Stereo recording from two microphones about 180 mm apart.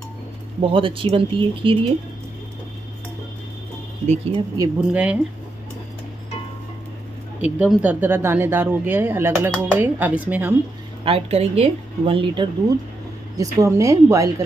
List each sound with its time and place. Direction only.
0.6 s speech: 30° right (ahead or behind)
4.0 s a woman's voice: 35° right (ahead or behind)
4.6 s speech: 20° right (ahead or behind)
4.9 s speech: 10° right (ahead or behind)
7.4 s speech: 10° right (ahead or behind)
11.1 s a woman's voice: 35° right (ahead or behind)
13.4 s speech: 20° right (ahead or behind)